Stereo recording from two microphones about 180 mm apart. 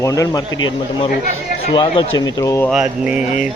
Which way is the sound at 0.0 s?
20° left (ahead or behind).